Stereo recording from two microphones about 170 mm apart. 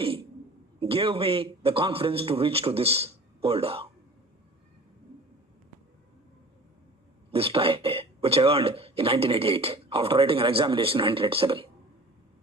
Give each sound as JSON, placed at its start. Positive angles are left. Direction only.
{"t": 0.0, "sound": "a sound", "side_deg": -30}
{"t": 0.8, "sound": "speech", "side_deg": -30}
{"t": 7.3, "sound": "speech", "side_deg": -35}